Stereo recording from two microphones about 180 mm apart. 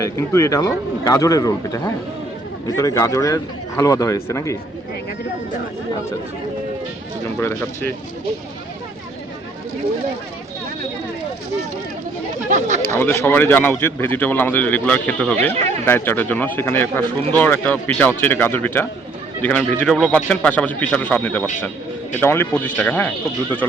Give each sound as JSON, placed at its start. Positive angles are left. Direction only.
{"t": 0.0, "sound": "speech", "side_deg": 15}
{"t": 12.5, "sound": "speech", "side_deg": -40}
{"t": 13.0, "sound": "speech", "side_deg": 15}